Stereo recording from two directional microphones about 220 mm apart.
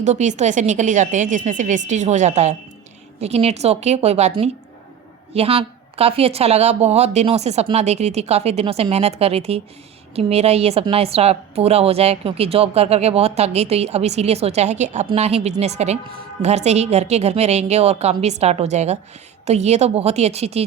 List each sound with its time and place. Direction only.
0.0 s a woman's voice: 30° right (ahead or behind)